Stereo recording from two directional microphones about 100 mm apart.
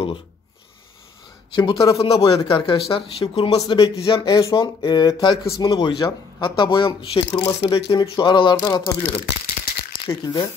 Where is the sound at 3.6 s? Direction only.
40° left (ahead or behind).